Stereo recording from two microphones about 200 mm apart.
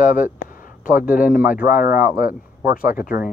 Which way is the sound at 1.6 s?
10° right (ahead or behind).